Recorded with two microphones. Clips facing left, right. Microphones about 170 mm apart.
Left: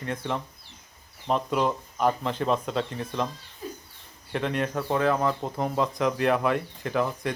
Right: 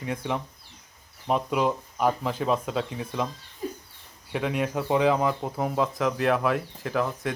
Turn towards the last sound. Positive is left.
turn(degrees=0)  # may be behind; listen again after turning